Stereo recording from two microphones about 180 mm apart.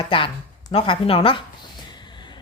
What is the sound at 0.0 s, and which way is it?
A woman's voice, 30° left (ahead or behind).